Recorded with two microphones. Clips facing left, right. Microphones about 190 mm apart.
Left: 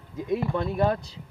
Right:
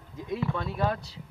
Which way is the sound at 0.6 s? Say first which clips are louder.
Left 5 dB; 20° left (ahead or behind).